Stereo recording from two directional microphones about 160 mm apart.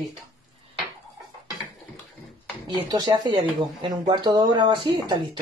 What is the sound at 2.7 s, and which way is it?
Speech, 25° right (ahead or behind).